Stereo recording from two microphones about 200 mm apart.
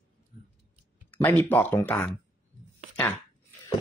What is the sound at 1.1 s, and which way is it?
Speech, 10° left (ahead or behind).